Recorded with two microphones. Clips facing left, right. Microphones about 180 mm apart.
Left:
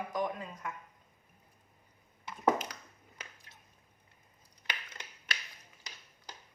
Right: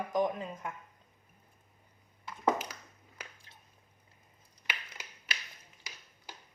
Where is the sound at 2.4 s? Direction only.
10° right (ahead or behind).